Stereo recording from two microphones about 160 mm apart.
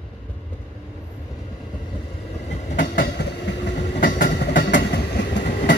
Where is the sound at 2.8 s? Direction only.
65° left (ahead or behind).